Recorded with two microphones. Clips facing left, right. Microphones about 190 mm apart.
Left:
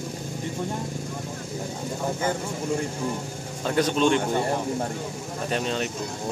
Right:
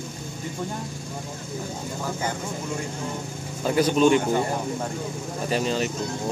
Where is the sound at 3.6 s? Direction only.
5° right (ahead or behind).